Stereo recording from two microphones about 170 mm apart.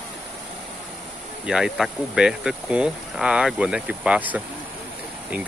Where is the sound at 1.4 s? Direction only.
5° right (ahead or behind).